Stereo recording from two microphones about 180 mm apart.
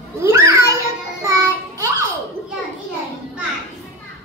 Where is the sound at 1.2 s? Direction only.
15° right (ahead or behind).